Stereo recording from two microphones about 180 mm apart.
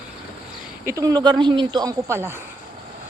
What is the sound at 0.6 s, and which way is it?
Speech, 10° right (ahead or behind).